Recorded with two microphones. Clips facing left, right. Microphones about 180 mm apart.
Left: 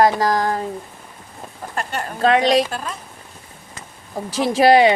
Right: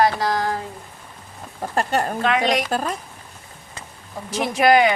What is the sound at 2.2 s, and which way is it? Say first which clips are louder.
Speech: left 8 dB; 30° left (ahead or behind).